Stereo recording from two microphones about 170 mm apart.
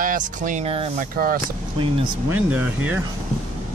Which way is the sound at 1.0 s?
55° right (ahead or behind).